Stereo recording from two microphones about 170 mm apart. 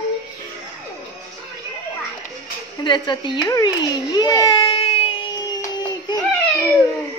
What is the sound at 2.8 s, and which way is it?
A child's voice, 25° left (ahead or behind).